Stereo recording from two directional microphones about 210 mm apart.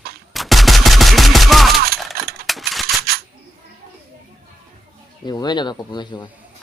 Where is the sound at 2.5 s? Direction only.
Centre (ahead or behind).